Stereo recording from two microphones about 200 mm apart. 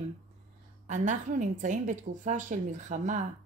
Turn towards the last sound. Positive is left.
turn(degrees=-35)  # may be behind; listen again after turning